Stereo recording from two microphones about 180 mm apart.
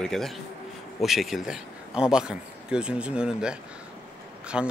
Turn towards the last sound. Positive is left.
turn(degrees=-5)  # may be behind; listen again after turning